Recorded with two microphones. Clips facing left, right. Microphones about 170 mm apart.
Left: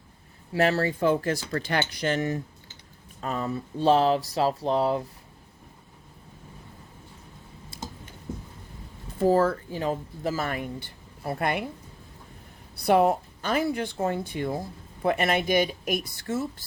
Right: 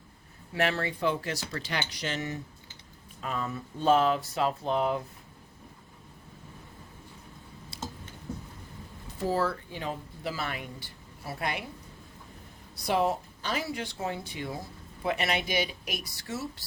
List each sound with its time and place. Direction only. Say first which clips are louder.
0.5 s speech: left 6 dB; 40° left (ahead or behind)
9.1 s speech: left 7 dB; 50° left (ahead or behind)
12.7 s speech: left 6 dB; 60° left (ahead or behind)